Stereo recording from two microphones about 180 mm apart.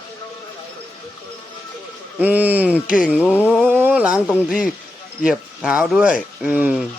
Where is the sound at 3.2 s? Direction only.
10° left (ahead or behind).